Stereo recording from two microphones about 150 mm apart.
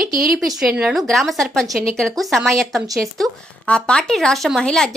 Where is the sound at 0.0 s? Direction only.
70° right (ahead or behind).